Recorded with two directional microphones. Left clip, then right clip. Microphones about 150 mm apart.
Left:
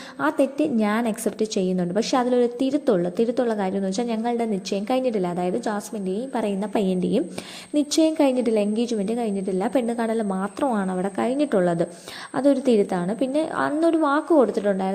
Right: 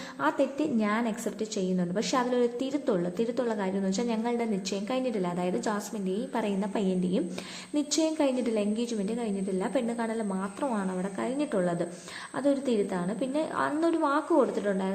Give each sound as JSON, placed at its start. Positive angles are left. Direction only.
{"t": 0.2, "sound": "a woman's voice", "side_deg": 35}